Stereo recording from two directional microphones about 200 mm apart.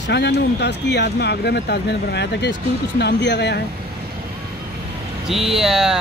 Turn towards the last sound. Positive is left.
turn(degrees=-5)  # may be behind; listen again after turning